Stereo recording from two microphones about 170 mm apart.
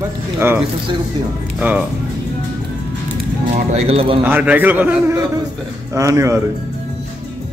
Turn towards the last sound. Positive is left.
turn(degrees=-15)  # may be behind; listen again after turning